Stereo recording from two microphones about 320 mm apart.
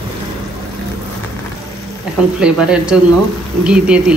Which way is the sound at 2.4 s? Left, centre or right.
Centre.